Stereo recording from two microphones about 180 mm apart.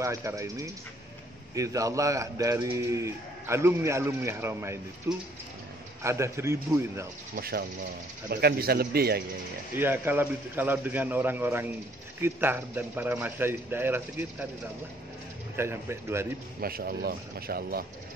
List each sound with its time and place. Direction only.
0.0 s speech: 15° right (ahead or behind)
7.3 s speech: 60° right (ahead or behind)
9.8 s speech: 10° right (ahead or behind)
15.5 s speech: 15° right (ahead or behind)
16.6 s speech: 60° right (ahead or behind)